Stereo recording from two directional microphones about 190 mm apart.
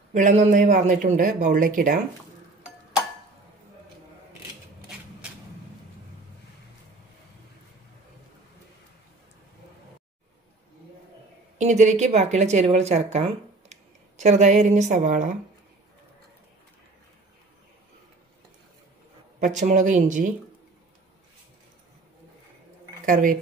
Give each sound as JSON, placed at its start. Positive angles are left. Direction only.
{"t": 0.1, "sound": "speech", "side_deg": -40}
{"t": 11.5, "sound": "speech", "side_deg": -40}
{"t": 19.4, "sound": "speech", "side_deg": -40}
{"t": 23.0, "sound": "speech", "side_deg": -45}